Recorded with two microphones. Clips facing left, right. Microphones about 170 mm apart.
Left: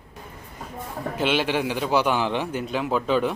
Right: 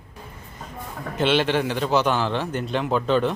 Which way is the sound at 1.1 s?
10° left (ahead or behind).